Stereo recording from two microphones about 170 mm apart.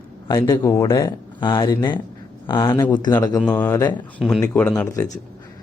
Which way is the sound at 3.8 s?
25° left (ahead or behind).